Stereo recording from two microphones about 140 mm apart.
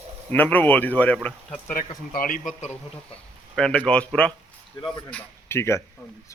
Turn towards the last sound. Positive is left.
turn(degrees=20)  # may be behind; listen again after turning